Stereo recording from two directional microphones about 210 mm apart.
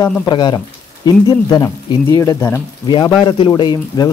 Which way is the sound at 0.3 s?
20° left (ahead or behind).